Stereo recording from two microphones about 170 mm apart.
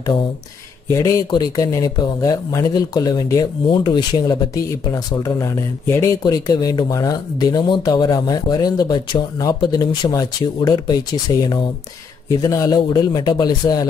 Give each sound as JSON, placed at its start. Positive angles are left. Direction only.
{"t": 0.8, "sound": "speech", "side_deg": 20}